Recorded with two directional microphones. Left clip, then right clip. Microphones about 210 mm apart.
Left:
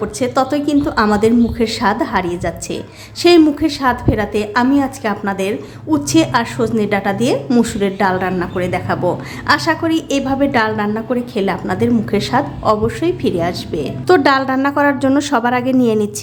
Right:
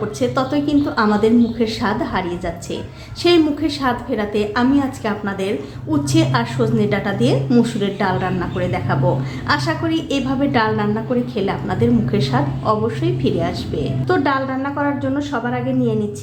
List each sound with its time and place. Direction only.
0.2 s a woman's voice: 25° left (ahead or behind)